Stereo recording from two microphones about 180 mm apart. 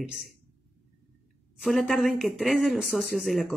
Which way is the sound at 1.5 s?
Centre (ahead or behind).